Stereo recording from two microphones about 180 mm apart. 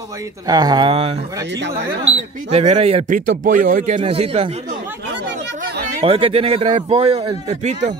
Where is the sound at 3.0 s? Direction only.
50° right (ahead or behind); by 4.6 s 30° right (ahead or behind).